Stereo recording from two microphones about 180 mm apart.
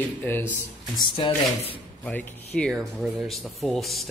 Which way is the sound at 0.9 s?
25° left (ahead or behind).